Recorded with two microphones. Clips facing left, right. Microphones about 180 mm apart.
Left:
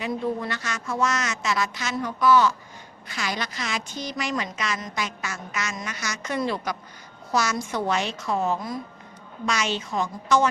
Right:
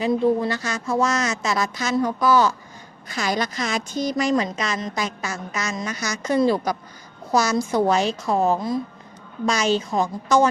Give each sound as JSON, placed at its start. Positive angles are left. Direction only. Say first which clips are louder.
{"t": 0.0, "sound": "a woman's voice", "louder": "right 8 dB", "side_deg": -30}